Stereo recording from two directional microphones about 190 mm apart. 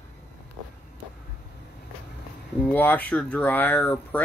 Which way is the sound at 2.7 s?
10° left (ahead or behind).